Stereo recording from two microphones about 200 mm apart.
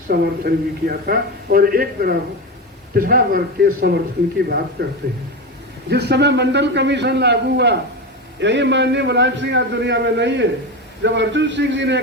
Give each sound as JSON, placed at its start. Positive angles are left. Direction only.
{"t": 0.1, "sound": "a man's voice", "side_deg": -50}